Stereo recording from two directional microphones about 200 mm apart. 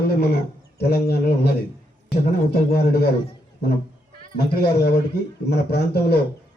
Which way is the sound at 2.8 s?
55° left (ahead or behind).